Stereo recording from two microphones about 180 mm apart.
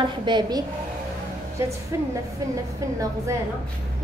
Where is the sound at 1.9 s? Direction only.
15° right (ahead or behind).